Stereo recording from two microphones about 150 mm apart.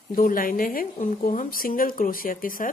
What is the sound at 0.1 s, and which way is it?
Speech, 65° left (ahead or behind).